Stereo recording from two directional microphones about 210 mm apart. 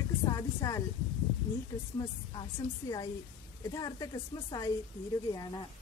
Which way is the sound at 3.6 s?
15° left (ahead or behind).